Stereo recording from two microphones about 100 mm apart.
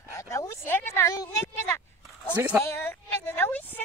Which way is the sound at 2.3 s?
15° right (ahead or behind).